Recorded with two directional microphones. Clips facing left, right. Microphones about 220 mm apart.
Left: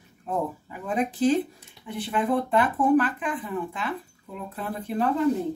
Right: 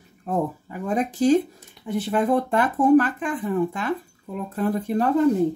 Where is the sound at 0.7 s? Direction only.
45° right (ahead or behind).